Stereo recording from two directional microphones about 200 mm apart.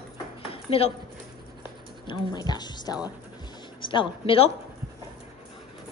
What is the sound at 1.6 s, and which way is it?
A woman's voice, 20° left (ahead or behind).